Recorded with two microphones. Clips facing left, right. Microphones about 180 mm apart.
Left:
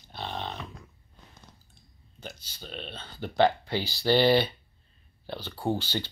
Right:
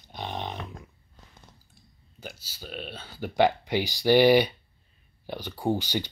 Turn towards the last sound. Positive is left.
turn(degrees=-15)  # may be behind; listen again after turning